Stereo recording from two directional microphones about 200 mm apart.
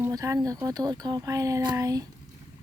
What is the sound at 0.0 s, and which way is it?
Speech, 15° right (ahead or behind).